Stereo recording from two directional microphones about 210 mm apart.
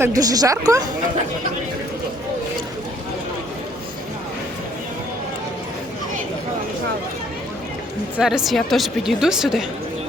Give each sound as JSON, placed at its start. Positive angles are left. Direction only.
{"t": 0.0, "sound": "a woman's voice", "side_deg": -15}
{"t": 8.1, "sound": "speech", "side_deg": 0}